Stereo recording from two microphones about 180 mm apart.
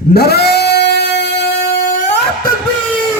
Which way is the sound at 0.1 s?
60° left (ahead or behind).